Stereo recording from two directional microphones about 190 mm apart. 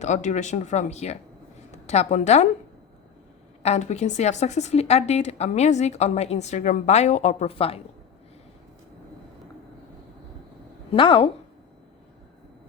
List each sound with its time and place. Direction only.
0.0 s a woman's voice: 40° left (ahead or behind)
3.6 s speech: 35° left (ahead or behind)
10.9 s a woman's voice: 25° left (ahead or behind)